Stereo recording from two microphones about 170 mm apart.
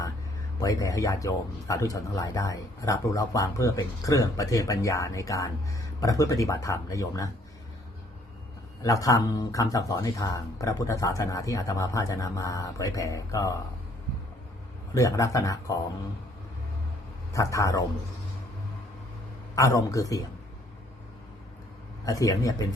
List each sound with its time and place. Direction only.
0.6 s speech: 20° left (ahead or behind)
8.8 s speech: 20° left (ahead or behind)
14.9 s speech: 20° left (ahead or behind)
17.3 s speech: 20° left (ahead or behind)
19.5 s speech: 20° left (ahead or behind)
22.0 s speech: 20° left (ahead or behind)